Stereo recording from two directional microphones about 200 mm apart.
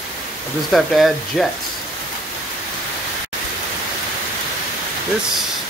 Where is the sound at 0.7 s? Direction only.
Centre (ahead or behind).